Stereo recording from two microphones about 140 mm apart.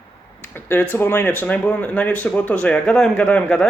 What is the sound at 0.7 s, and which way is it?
Speech, 15° left (ahead or behind).